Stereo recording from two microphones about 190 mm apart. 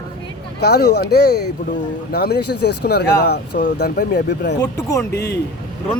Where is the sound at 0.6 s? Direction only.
60° left (ahead or behind).